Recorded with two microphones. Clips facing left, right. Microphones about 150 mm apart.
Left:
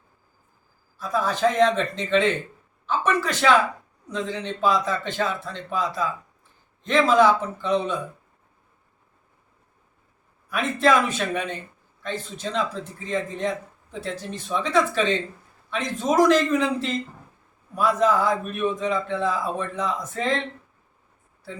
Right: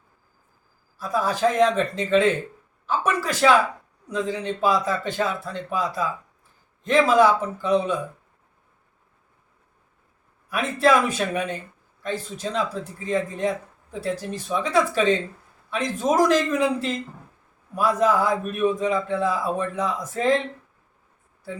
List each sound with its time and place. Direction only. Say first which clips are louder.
0.9 s a man's voice: right 1 dB; 10° right (ahead or behind)
10.5 s a man's voice: right 1 dB; 5° right (ahead or behind)